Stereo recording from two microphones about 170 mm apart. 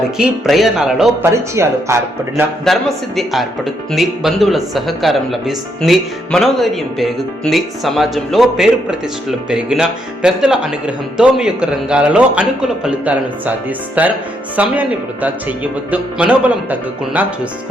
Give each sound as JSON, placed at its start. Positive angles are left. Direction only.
{"t": 0.2, "sound": "speech", "side_deg": 0}
{"t": 1.2, "sound": "speech", "side_deg": -15}
{"t": 2.7, "sound": "speech", "side_deg": 0}